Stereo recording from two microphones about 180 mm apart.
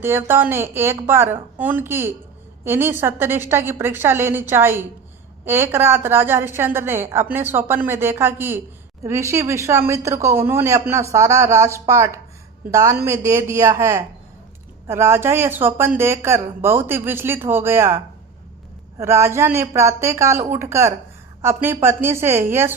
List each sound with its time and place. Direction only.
0.0 s a woman's voice: 10° right (ahead or behind)